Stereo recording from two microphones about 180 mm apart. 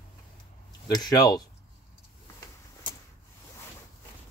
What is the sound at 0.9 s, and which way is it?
Speech, 20° left (ahead or behind).